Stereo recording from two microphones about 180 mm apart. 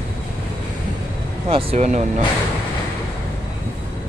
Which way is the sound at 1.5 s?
35° right (ahead or behind).